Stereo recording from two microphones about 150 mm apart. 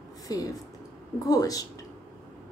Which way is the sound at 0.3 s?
25° left (ahead or behind).